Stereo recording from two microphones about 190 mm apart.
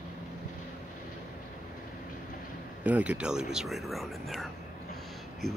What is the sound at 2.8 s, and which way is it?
Speech, 5° right (ahead or behind).